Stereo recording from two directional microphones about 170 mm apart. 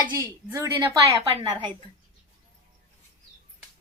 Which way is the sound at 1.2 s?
30° right (ahead or behind).